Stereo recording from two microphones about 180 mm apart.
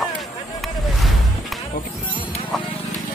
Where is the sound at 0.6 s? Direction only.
Centre (ahead or behind).